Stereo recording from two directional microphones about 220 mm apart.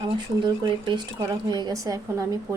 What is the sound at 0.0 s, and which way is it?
Speech, 20° right (ahead or behind).